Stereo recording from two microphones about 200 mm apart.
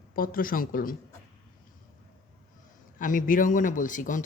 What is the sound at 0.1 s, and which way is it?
Speech, 45° left (ahead or behind).